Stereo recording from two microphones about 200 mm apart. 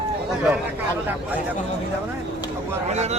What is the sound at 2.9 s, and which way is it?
Speech, 35° right (ahead or behind).